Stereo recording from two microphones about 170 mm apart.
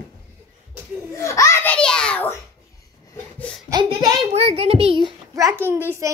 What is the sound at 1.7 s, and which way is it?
Speech, 5° left (ahead or behind).